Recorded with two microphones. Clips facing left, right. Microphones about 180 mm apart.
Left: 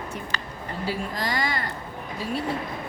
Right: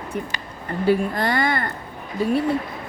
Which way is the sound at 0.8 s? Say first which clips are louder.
Right 10 dB; 60° right (ahead or behind).